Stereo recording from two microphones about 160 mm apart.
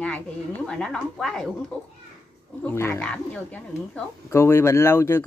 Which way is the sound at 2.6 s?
15° left (ahead or behind).